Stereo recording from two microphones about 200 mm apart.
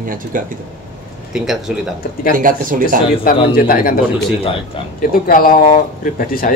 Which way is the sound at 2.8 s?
50° left (ahead or behind).